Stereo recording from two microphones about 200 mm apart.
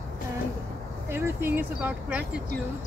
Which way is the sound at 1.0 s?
10° right (ahead or behind).